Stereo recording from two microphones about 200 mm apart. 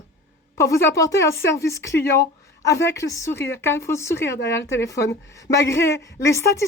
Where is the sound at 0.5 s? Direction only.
15° left (ahead or behind).